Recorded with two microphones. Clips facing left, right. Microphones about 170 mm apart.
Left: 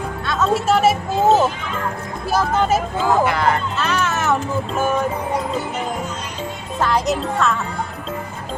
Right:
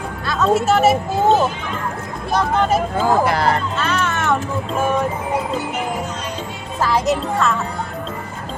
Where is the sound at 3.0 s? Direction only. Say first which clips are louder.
Right 1 dB; 35° right (ahead or behind).